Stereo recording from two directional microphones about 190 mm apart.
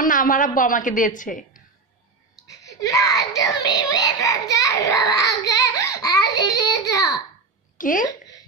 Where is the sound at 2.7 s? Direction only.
20° left (ahead or behind).